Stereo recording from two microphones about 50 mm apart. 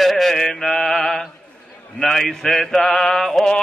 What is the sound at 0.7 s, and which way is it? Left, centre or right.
Mantra, left.